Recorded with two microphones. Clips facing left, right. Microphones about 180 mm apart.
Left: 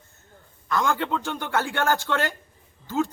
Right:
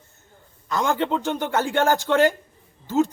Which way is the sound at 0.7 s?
20° right (ahead or behind).